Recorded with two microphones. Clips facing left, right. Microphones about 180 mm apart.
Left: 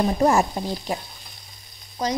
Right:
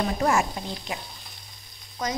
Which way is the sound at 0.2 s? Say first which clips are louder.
Left 5 dB; 35° left (ahead or behind).